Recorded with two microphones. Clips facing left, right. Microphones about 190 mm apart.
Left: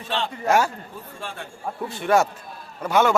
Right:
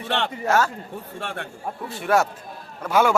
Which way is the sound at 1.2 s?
65° right (ahead or behind).